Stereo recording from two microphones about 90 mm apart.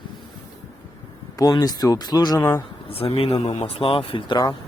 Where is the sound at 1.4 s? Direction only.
45° left (ahead or behind).